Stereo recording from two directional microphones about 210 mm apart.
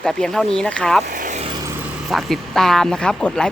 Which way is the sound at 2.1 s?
Centre (ahead or behind).